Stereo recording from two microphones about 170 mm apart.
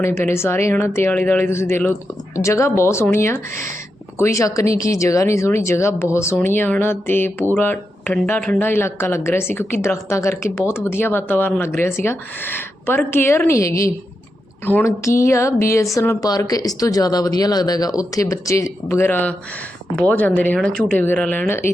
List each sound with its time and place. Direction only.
0.0 s speech: 15° left (ahead or behind)